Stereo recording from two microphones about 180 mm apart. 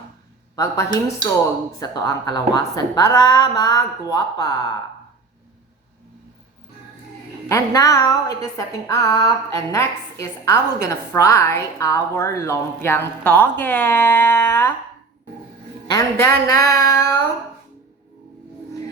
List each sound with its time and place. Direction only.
0.5 s a woman's voice: 20° left (ahead or behind)
7.4 s music: 15° left (ahead or behind)
15.9 s music: 20° left (ahead or behind)